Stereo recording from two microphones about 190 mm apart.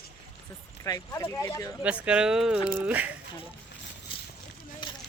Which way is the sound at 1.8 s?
5° right (ahead or behind).